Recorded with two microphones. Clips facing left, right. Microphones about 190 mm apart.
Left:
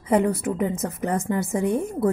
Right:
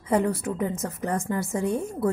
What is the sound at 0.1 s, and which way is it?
A woman's voice, 20° left (ahead or behind).